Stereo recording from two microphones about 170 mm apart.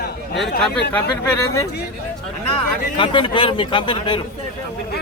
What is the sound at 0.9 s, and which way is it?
Speech, 20° left (ahead or behind).